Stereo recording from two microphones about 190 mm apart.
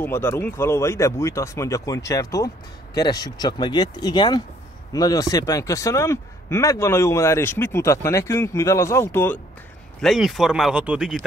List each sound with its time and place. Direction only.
0.0 s speech: 10° left (ahead or behind)
10.0 s speech: centre (ahead or behind)